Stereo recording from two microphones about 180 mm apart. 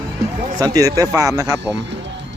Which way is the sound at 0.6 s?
20° right (ahead or behind).